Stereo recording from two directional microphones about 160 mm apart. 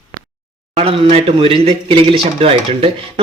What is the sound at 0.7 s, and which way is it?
Speech, 35° right (ahead or behind).